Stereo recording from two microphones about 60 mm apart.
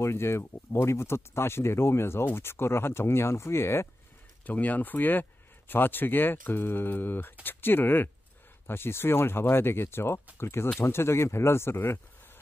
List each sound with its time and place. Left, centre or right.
0.0 s speech: left
4.5 s speech: left